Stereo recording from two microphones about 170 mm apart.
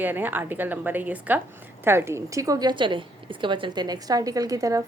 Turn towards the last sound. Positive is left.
turn(degrees=-20)  # may be behind; listen again after turning